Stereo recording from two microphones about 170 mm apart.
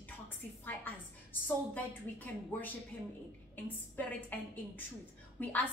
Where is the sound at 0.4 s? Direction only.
10° left (ahead or behind).